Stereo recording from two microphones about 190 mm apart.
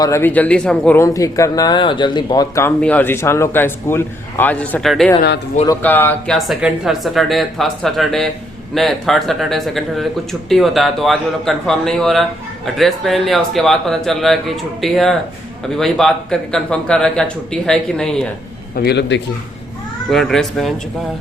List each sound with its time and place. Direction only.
0.0 s a man's voice: 15° left (ahead or behind)
18.7 s a man's voice: 55° left (ahead or behind)
20.1 s a man's voice: centre (ahead or behind)